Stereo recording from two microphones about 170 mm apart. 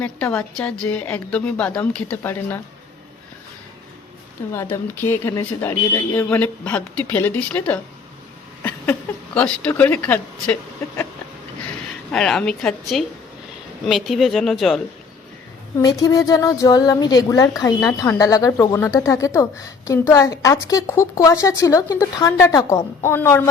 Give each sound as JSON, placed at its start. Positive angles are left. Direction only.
{"t": 0.0, "sound": "a woman's voice", "side_deg": 10}
{"t": 4.5, "sound": "a woman's voice", "side_deg": 15}
{"t": 12.1, "sound": "a woman's voice", "side_deg": 5}
{"t": 16.0, "sound": "a woman's voice", "side_deg": 20}